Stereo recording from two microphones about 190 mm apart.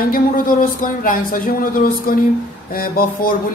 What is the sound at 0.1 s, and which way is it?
Speech, 45° left (ahead or behind).